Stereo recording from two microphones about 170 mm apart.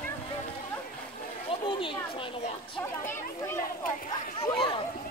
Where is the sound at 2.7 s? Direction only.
15° left (ahead or behind).